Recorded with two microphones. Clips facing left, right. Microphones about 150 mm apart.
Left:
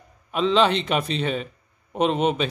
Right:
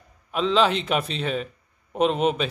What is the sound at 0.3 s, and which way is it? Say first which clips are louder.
A man's voice: left 1 dB; centre (ahead or behind).